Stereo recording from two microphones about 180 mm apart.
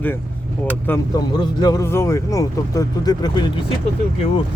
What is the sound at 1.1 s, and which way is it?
Speech, 20° left (ahead or behind).